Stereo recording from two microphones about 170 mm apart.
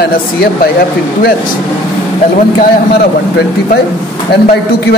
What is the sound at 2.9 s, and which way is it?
Speech, 70° left (ahead or behind).